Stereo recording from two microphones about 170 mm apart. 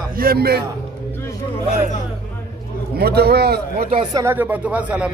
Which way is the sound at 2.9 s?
70° right (ahead or behind).